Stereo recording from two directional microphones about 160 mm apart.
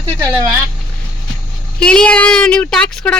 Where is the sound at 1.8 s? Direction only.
5° left (ahead or behind).